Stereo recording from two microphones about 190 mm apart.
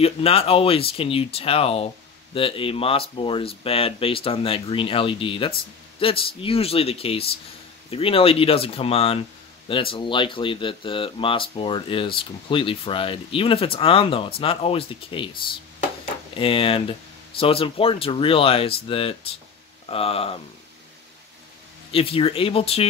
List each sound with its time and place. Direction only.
0.0 s speech: 30° left (ahead or behind)
16.3 s speech: 30° left (ahead or behind)
21.9 s speech: 30° left (ahead or behind)